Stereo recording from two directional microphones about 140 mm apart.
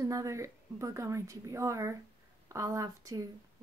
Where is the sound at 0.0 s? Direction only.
25° right (ahead or behind).